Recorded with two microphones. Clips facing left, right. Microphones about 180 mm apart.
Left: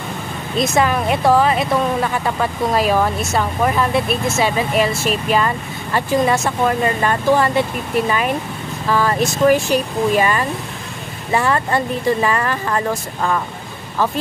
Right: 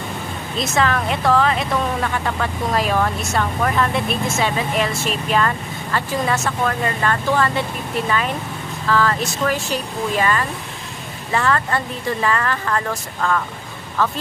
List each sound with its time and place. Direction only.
0.6 s speech: 15° left (ahead or behind)
8.8 s speech: 15° left (ahead or behind)